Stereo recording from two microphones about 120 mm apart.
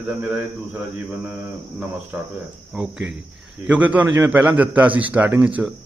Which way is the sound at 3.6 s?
10° right (ahead or behind).